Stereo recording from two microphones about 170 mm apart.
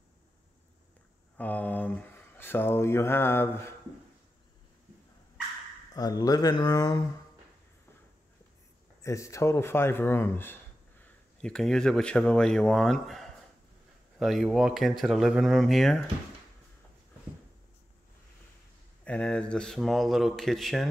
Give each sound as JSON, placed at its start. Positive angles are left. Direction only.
{"t": 1.4, "sound": "speech", "side_deg": 10}
{"t": 5.9, "sound": "speech", "side_deg": 20}
{"t": 9.0, "sound": "speech", "side_deg": 20}
{"t": 19.0, "sound": "speech", "side_deg": 5}